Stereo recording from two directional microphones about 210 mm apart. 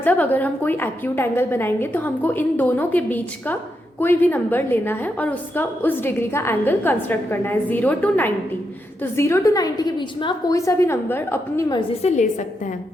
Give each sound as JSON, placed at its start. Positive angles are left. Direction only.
{"t": 0.0, "sound": "a woman's voice", "side_deg": 10}
{"t": 12.0, "sound": "a woman's voice", "side_deg": 35}